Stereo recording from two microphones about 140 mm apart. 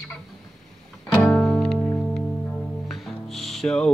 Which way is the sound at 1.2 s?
Centre (ahead or behind).